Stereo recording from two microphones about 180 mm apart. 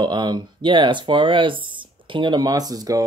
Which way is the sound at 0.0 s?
25° right (ahead or behind).